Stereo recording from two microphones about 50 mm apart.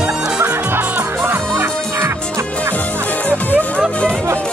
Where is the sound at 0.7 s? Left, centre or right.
Right.